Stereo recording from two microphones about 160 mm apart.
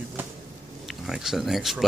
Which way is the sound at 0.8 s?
Centre (ahead or behind).